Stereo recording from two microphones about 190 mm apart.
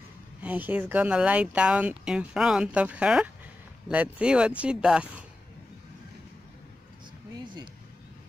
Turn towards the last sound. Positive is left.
turn(degrees=-25)  # may be behind; listen again after turning